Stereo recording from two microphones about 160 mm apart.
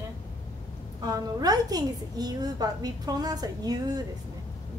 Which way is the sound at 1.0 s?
25° right (ahead or behind).